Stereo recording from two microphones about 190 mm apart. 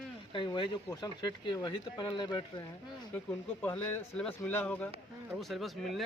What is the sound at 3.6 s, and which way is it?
Speech, 10° left (ahead or behind).